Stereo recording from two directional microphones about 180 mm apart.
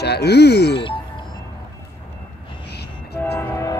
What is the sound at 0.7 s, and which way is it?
Music, 30° left (ahead or behind).